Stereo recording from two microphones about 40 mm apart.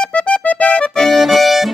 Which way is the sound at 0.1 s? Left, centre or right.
Left.